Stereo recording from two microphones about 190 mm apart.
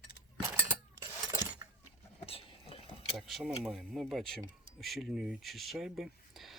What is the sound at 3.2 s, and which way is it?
Speech, centre (ahead or behind).